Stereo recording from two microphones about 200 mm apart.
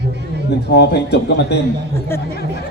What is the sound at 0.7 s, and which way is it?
Speech, 55° left (ahead or behind).